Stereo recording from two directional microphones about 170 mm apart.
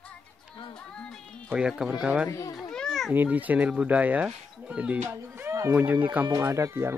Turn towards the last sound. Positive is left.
turn(degrees=-15)  # may be behind; listen again after turning